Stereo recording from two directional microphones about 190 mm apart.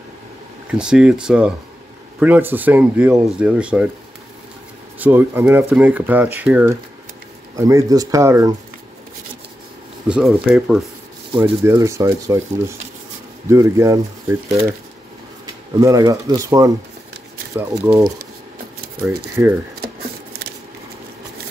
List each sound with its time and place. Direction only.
0.7 s speech: 5° right (ahead or behind)
4.9 s speech: 10° right (ahead or behind)
10.0 s speech: 5° right (ahead or behind)
11.6 s speech: 15° right (ahead or behind)
15.8 s speech: 20° right (ahead or behind)